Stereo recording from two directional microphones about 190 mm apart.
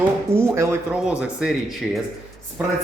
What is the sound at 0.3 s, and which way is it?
Speech, 15° right (ahead or behind).